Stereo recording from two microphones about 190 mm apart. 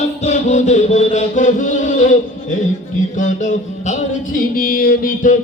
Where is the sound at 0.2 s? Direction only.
40° left (ahead or behind).